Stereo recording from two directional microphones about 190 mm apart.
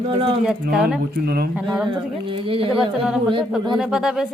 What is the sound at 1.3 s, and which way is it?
Speech, 55° right (ahead or behind).